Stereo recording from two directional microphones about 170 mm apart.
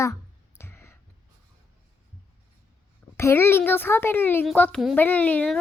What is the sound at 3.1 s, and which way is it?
Speech, 15° left (ahead or behind).